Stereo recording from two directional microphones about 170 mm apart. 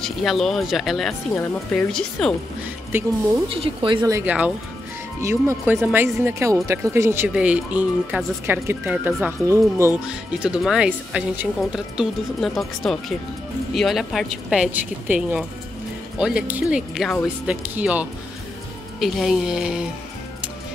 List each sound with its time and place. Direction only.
0.0 s speech: centre (ahead or behind)
1.3 s speech: 10° left (ahead or behind)
3.4 s speech: 30° right (ahead or behind)
4.1 s speech: 10° right (ahead or behind)
5.8 s speech: 5° right (ahead or behind)
10.0 s speech: 5° right (ahead or behind)